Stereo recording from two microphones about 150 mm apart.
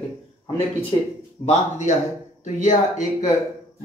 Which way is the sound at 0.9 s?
30° left (ahead or behind).